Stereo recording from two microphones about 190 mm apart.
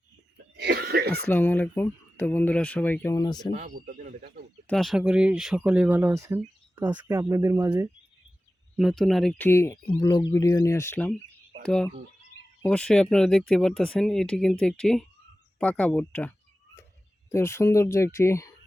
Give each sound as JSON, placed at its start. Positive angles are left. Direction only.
{"t": 0.5, "sound": "cough", "side_deg": -60}
{"t": 1.3, "sound": "speech", "side_deg": 10}
{"t": 3.5, "sound": "speech", "side_deg": -45}
{"t": 4.6, "sound": "speech", "side_deg": 0}
{"t": 8.8, "sound": "speech", "side_deg": 0}
{"t": 9.5, "sound": "speech", "side_deg": 15}